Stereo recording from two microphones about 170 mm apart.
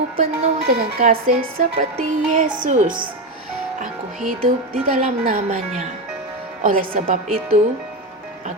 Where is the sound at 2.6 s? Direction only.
45° right (ahead or behind).